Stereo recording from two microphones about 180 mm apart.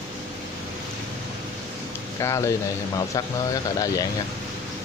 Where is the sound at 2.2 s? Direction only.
15° left (ahead or behind).